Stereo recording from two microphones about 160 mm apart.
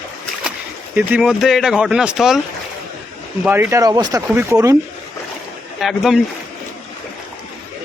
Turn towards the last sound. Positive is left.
turn(degrees=0)  # may be behind; listen again after turning